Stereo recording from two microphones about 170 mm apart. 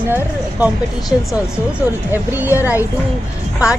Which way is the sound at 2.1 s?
10° right (ahead or behind).